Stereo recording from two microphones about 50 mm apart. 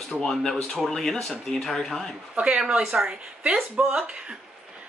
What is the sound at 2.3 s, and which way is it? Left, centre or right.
Speech, right.